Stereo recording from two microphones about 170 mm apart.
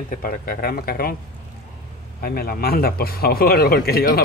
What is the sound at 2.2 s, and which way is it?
Speech, 65° left (ahead or behind).